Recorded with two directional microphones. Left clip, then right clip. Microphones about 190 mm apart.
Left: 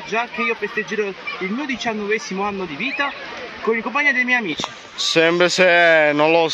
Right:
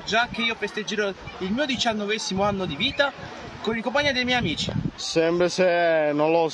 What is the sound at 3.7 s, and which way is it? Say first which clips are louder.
Speech: left 5 dB; 20° right (ahead or behind).